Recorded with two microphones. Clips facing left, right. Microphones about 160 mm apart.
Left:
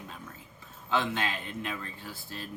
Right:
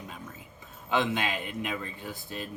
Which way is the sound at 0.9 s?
15° right (ahead or behind).